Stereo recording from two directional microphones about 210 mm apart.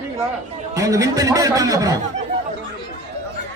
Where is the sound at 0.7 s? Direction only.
15° right (ahead or behind).